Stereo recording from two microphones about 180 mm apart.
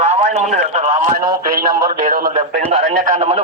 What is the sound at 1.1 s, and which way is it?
Speech, 55° right (ahead or behind).